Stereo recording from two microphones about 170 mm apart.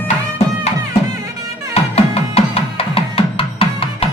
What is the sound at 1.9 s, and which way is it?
Music, 35° left (ahead or behind).